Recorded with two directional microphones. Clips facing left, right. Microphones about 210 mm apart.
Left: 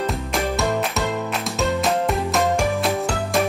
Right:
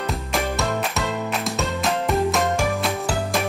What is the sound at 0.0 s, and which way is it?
Music, centre (ahead or behind).